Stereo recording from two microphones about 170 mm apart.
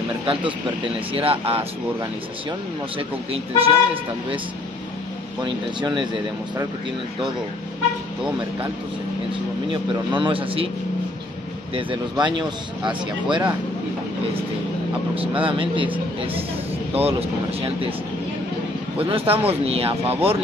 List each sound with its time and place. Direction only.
0.3 s speech: 30° right (ahead or behind)
3.0 s speech: 35° right (ahead or behind)
5.4 s speech: 25° right (ahead or behind)
9.7 s speech: 30° right (ahead or behind)
11.7 s speech: 30° right (ahead or behind)
15.4 s speech: 30° right (ahead or behind)
16.9 s speech: 35° right (ahead or behind)
18.9 s speech: 35° right (ahead or behind)